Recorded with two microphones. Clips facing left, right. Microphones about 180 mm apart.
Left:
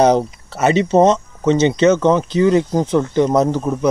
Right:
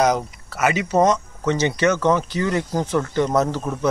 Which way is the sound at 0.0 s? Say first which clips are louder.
Left 6 dB; 30° left (ahead or behind).